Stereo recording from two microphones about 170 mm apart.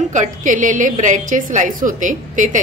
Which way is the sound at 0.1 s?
45° right (ahead or behind).